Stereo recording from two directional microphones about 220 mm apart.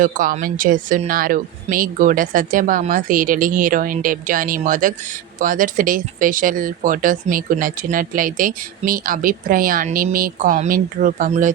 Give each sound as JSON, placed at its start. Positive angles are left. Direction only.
{"t": 0.0, "sound": "speech", "side_deg": -40}